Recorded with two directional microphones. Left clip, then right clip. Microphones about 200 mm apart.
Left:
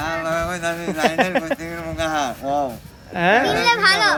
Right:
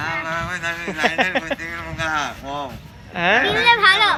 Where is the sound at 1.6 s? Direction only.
55° left (ahead or behind).